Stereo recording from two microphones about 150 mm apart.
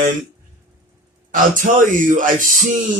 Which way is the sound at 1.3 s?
60° right (ahead or behind).